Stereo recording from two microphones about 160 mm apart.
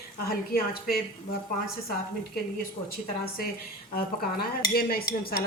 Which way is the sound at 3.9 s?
70° left (ahead or behind).